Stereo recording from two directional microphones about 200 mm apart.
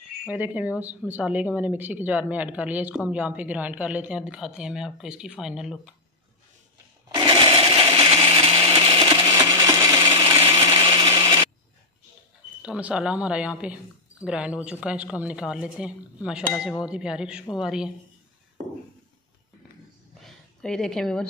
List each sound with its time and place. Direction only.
0.3 s speech: 10° right (ahead or behind)
7.2 s a sound: 25° right (ahead or behind)
9.0 s a sound: 15° right (ahead or behind)
10.6 s blender: 20° right (ahead or behind)
12.6 s speech: 5° right (ahead or behind)
20.2 s a woman's voice: 5° left (ahead or behind)